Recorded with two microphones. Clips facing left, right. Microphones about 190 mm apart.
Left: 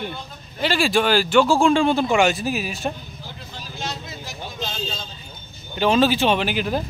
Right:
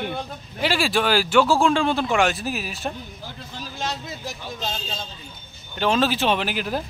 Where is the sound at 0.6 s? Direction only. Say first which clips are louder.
Left 2 dB; 5° right (ahead or behind).